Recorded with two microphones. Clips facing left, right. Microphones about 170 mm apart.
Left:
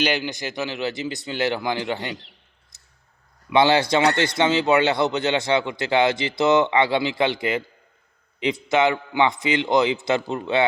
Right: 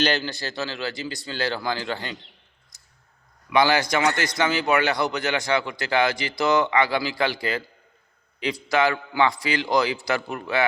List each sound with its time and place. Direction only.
0.0 s a man's voice: 15° left (ahead or behind)
3.5 s a man's voice: 25° left (ahead or behind)